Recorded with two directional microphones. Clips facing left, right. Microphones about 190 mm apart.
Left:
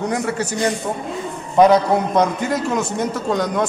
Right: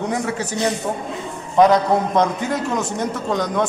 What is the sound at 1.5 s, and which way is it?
A man's voice, 5° left (ahead or behind).